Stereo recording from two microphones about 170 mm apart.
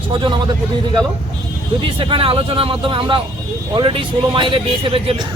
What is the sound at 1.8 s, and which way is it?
A man's voice, 30° right (ahead or behind).